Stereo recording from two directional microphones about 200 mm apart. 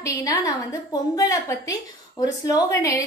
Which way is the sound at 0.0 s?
15° left (ahead or behind).